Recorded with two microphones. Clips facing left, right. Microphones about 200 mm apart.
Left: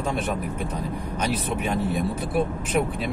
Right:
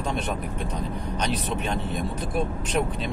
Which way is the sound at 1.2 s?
5° left (ahead or behind).